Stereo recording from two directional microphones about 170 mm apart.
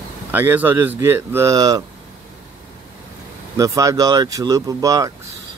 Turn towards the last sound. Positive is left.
turn(degrees=-20)  # may be behind; listen again after turning